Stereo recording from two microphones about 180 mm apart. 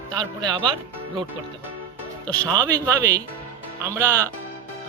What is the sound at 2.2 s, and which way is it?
Speech, 10° left (ahead or behind).